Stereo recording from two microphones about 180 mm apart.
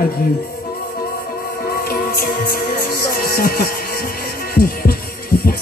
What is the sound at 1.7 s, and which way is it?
Music, 55° left (ahead or behind).